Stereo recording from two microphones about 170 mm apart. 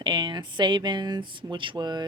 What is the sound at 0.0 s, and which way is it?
Speech, 25° right (ahead or behind).